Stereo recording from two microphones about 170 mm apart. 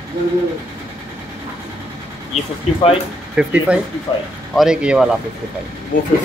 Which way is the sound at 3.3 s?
5° right (ahead or behind).